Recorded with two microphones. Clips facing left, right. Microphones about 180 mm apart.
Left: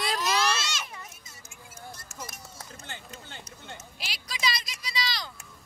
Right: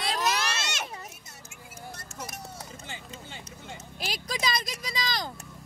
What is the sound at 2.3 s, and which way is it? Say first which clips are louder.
Run: right 6 dB; 65° right (ahead or behind).